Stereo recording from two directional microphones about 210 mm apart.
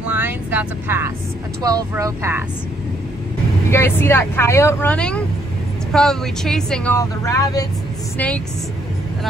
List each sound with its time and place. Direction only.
0.1 s speech: 10° right (ahead or behind)
3.7 s speech: 10° left (ahead or behind)